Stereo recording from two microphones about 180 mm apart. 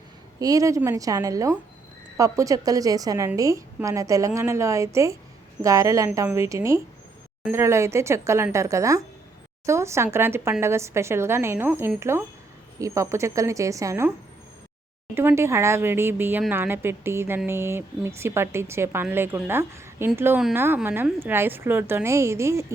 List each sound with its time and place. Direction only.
0.3 s a woman's voice: 20° right (ahead or behind)
15.1 s speech: 10° right (ahead or behind)